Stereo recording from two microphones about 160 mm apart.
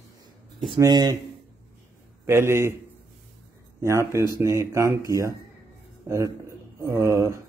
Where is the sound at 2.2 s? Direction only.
15° right (ahead or behind).